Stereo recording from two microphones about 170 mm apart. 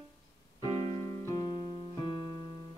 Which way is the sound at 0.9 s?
20° left (ahead or behind).